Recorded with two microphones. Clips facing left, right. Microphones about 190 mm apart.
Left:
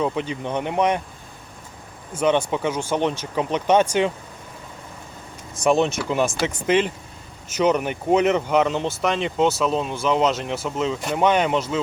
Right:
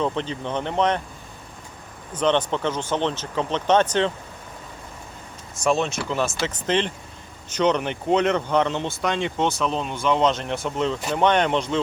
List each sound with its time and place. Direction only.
0.0 s speech: 10° left (ahead or behind)
2.1 s speech: 10° left (ahead or behind)
5.6 s speech: 15° left (ahead or behind)